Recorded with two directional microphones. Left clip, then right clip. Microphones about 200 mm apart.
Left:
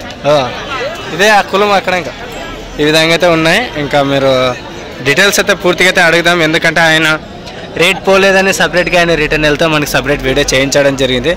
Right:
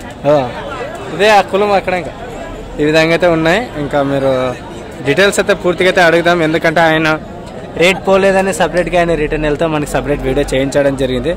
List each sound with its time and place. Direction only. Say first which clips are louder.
0.2 s speech: left 1 dB; 15° right (ahead or behind)
1.1 s a man's voice: left 1 dB; centre (ahead or behind)